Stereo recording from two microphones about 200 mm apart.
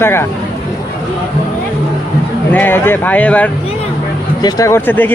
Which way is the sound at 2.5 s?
10° left (ahead or behind).